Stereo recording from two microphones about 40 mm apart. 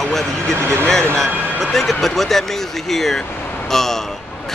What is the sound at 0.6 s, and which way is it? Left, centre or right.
Speech, right.